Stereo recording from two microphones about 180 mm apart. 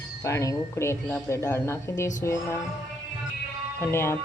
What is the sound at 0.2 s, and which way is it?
Speech, 15° left (ahead or behind).